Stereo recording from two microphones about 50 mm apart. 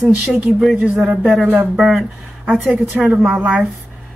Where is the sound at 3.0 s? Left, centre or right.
Centre.